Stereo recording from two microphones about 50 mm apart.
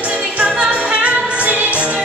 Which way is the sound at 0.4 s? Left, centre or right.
Right.